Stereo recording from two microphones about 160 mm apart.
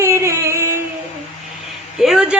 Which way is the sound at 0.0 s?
15° right (ahead or behind).